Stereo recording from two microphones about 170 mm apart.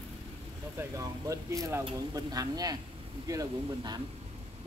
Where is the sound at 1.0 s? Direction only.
20° right (ahead or behind).